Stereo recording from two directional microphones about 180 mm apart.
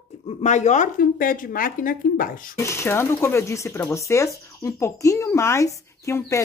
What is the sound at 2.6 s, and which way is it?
Speech, 15° left (ahead or behind).